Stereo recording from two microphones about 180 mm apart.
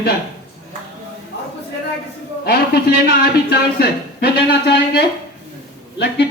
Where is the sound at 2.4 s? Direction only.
60° left (ahead or behind).